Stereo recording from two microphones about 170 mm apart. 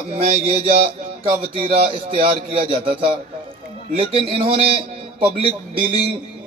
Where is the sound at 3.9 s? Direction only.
30° right (ahead or behind).